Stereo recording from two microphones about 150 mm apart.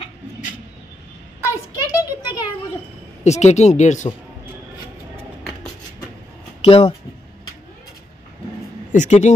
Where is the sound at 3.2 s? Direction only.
50° left (ahead or behind).